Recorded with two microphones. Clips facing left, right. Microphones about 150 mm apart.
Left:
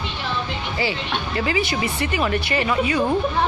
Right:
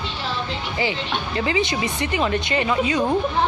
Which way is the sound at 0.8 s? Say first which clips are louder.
Even; 20° right (ahead or behind).